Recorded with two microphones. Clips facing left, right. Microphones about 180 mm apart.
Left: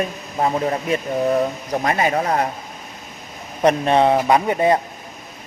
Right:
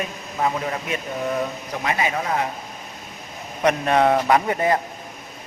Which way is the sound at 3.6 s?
30° left (ahead or behind).